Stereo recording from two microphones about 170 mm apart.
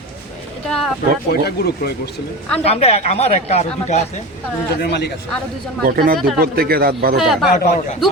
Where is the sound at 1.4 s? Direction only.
65° left (ahead or behind).